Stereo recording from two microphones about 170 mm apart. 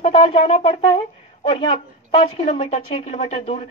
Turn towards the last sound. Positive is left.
turn(degrees=35)  # may be behind; listen again after turning